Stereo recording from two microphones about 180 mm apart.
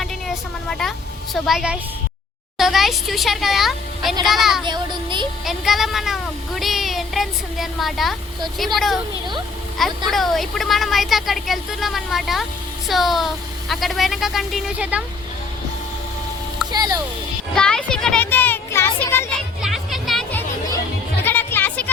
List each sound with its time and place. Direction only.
0.7 s a woman's voice: centre (ahead or behind)
4.6 s child singing: 25° right (ahead or behind)
5.5 s speech: centre (ahead or behind)
10.1 s speech: centre (ahead or behind)
16.7 s music: 20° right (ahead or behind)
17.5 s a child's voice: 5° left (ahead or behind)
18.9 s children playing: 15° left (ahead or behind)
19.6 s music: centre (ahead or behind)
21.2 s music: 10° left (ahead or behind)